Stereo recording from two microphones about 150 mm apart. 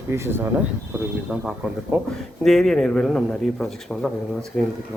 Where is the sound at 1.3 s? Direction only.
Centre (ahead or behind).